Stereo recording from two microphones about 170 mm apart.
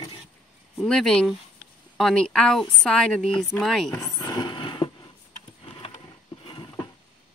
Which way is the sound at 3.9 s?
20° left (ahead or behind).